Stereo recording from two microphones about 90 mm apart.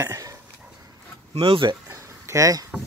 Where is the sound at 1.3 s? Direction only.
85° right.